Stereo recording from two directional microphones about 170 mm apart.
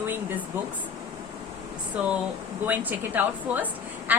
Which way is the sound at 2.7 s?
10° right (ahead or behind).